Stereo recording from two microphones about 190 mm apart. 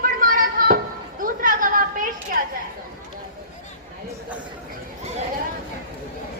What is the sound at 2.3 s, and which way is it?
Chatter, 50° right (ahead or behind).